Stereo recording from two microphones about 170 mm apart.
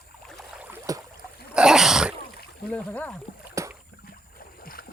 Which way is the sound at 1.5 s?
5° right (ahead or behind).